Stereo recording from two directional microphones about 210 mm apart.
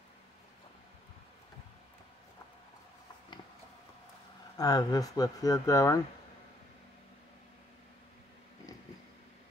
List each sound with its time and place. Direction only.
4.6 s speech: 20° left (ahead or behind)